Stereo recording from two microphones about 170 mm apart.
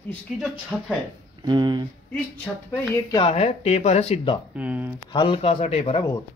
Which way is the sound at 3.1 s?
30° left (ahead or behind).